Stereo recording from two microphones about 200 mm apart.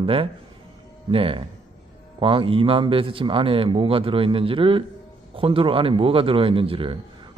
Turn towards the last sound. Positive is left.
turn(degrees=-25)  # may be behind; listen again after turning